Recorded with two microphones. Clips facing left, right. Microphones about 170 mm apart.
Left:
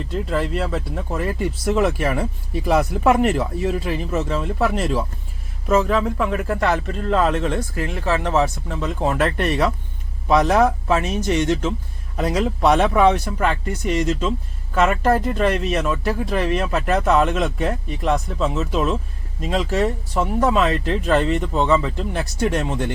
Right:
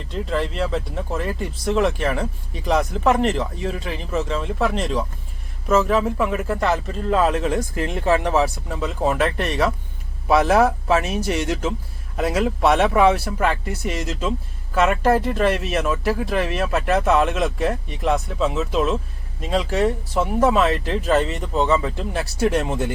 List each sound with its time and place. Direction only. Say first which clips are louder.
0.1 s speech: left 1 dB; centre (ahead or behind)
7.8 s speech: right 4 dB; 20° right (ahead or behind)